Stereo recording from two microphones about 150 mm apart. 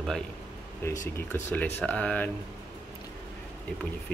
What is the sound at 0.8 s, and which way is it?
Speech, 15° left (ahead or behind).